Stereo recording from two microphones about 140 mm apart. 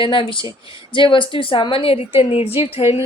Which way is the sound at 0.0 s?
35° left (ahead or behind).